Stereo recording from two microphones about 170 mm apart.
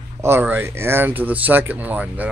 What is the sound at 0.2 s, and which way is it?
Speech, 15° right (ahead or behind).